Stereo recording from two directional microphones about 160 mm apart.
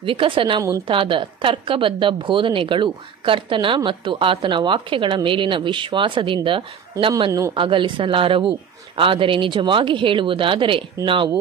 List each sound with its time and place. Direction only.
0.0 s a woman's voice: 35° right (ahead or behind)